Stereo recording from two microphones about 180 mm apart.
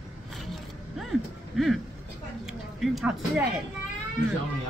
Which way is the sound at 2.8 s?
Centre (ahead or behind).